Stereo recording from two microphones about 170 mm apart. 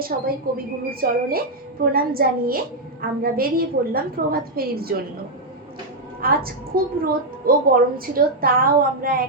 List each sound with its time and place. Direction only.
0.0 s a woman's voice: 60° right (ahead or behind)
6.2 s a woman's voice: 60° right (ahead or behind)